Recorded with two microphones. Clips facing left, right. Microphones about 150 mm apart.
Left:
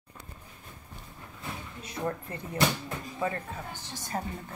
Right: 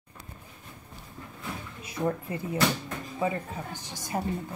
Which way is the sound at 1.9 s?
10° right (ahead or behind).